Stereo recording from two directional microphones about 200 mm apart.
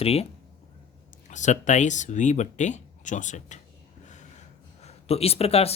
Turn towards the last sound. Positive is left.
turn(degrees=30)  # may be behind; listen again after turning